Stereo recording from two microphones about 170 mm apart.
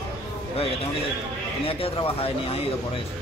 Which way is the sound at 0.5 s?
35° left (ahead or behind).